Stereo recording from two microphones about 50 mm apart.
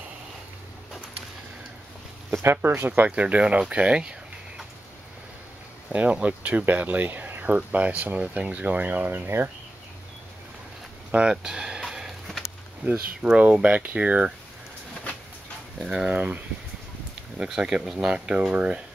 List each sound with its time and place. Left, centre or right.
2.3 s speech: right
3.1 s speech: right
5.9 s speech: right
7.4 s speech: right
8.9 s speech: right
11.1 s speech: centre
13.2 s speech: right
15.8 s speech: centre
16.1 s speech: right
17.4 s speech: centre